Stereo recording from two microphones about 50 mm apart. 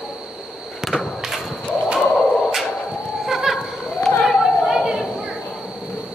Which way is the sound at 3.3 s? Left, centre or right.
Centre.